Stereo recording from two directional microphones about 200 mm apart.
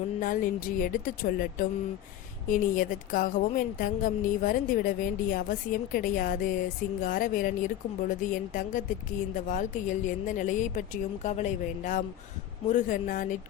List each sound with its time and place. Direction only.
0.2 s a woman's voice: 45° left (ahead or behind)